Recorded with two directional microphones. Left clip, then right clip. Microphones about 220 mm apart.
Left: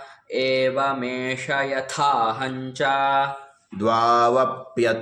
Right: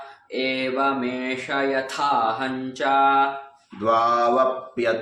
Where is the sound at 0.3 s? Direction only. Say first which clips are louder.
Left 4 dB; 40° left (ahead or behind).